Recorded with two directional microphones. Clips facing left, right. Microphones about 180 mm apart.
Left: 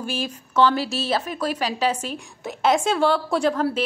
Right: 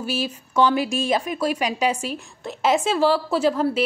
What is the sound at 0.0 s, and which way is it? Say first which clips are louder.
A woman's voice: right 2 dB; 5° right (ahead or behind).